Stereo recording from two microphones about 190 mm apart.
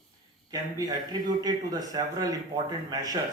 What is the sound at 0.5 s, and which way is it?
A man's voice, 20° right (ahead or behind).